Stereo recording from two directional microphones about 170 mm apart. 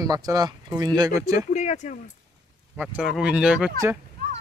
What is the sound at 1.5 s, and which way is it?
Speech, 45° left (ahead or behind).